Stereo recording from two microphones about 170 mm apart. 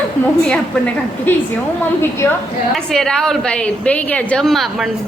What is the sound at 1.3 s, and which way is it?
Speech, 10° left (ahead or behind).